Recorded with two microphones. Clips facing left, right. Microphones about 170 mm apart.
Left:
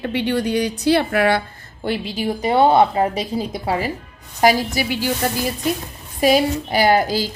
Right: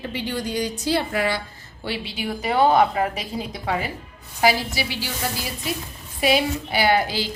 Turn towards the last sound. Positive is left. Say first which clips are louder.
# left 4 dB
turn(degrees=40)  # may be behind; listen again after turning